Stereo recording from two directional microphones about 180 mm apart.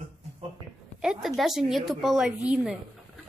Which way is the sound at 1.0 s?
5° right (ahead or behind).